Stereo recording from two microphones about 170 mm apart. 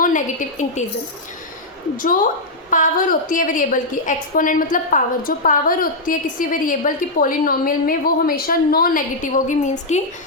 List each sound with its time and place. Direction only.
0.0 s a woman's voice: 50° left (ahead or behind)
2.0 s a woman's voice: 55° left (ahead or behind)